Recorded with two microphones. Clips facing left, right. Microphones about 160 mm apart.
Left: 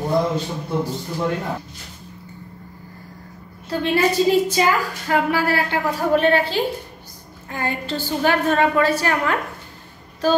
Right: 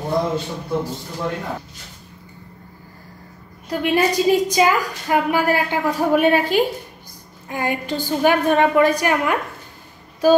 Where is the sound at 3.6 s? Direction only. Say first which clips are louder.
Right 1 dB; 15° right (ahead or behind).